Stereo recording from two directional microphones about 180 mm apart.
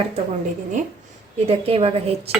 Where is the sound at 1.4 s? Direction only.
35° right (ahead or behind).